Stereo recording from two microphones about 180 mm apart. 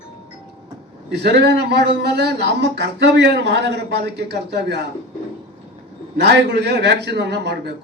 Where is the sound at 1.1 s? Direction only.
65° right (ahead or behind).